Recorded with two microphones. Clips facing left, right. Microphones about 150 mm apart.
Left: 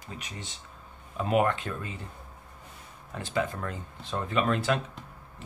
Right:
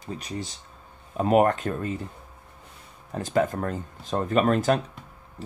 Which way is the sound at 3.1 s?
45° right (ahead or behind).